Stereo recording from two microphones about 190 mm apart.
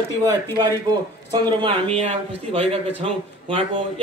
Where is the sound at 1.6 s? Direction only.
30° right (ahead or behind).